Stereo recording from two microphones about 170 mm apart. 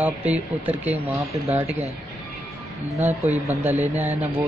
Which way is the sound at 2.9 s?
10° right (ahead or behind).